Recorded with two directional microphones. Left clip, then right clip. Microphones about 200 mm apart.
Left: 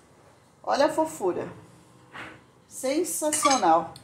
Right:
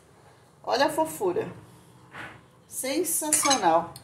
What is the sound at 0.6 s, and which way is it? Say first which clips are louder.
Speech: left 1 dB; 15° left (ahead or behind).